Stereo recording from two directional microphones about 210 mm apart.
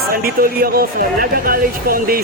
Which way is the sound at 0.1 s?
45° right (ahead or behind).